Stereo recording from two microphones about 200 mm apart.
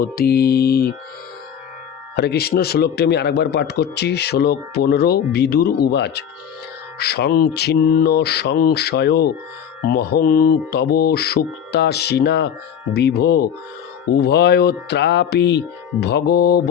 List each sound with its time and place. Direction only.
0.0 s speech: 50° left (ahead or behind)
2.1 s speech: 55° left (ahead or behind)